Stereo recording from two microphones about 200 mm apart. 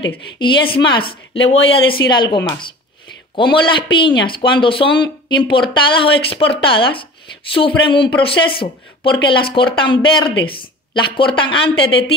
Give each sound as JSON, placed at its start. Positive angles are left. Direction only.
{"t": 0.7, "sound": "speech", "side_deg": 25}
{"t": 3.5, "sound": "speech", "side_deg": 25}